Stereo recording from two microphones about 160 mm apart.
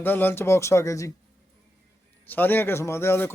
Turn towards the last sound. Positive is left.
turn(degrees=15)  # may be behind; listen again after turning